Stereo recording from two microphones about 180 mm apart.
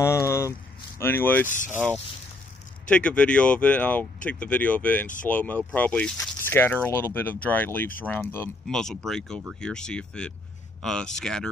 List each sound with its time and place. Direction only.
0.0 s a sound: 15° left (ahead or behind)
0.9 s speech: 10° left (ahead or behind)
1.5 s speech: 45° left (ahead or behind)
2.9 s speech: 5° left (ahead or behind)